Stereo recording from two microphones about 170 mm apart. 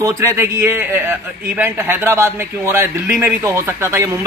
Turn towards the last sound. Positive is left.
turn(degrees=-15)  # may be behind; listen again after turning